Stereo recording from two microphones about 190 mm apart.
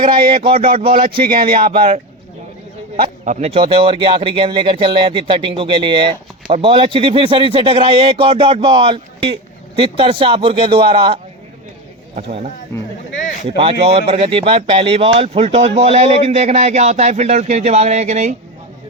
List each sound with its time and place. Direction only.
0.1 s speech: 25° right (ahead or behind)
1.3 s speech: 50° right (ahead or behind)
3.0 s speech: 40° right (ahead or behind)
12.1 s speech: 35° right (ahead or behind)
13.6 s speech: 30° right (ahead or behind)